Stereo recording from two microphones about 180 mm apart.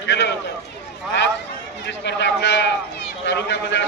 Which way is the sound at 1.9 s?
80° left.